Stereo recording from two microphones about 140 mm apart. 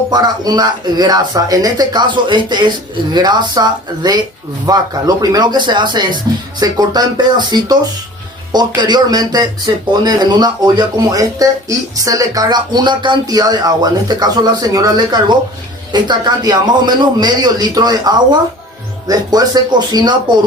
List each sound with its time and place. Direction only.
0.1 s speech: 30° right (ahead or behind)